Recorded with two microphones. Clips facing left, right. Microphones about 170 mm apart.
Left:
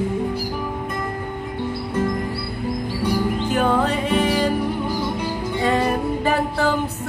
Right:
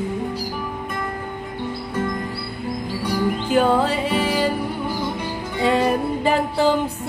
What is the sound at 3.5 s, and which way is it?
Music, 10° right (ahead or behind).